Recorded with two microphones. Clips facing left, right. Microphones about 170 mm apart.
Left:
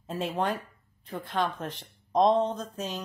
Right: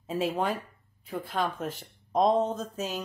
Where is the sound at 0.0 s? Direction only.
5° right (ahead or behind).